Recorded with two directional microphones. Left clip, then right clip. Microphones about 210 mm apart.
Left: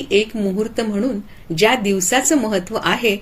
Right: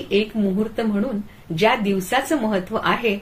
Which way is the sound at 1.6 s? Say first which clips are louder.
Left 3 dB; 50° left (ahead or behind).